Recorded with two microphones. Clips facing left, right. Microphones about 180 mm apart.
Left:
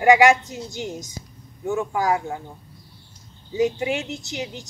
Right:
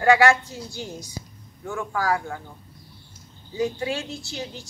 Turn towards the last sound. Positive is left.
turn(degrees=20)  # may be behind; listen again after turning